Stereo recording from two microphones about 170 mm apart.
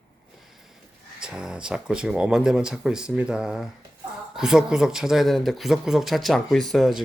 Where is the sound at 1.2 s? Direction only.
5° right (ahead or behind).